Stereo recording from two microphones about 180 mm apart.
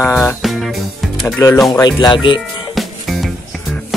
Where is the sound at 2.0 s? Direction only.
25° left (ahead or behind).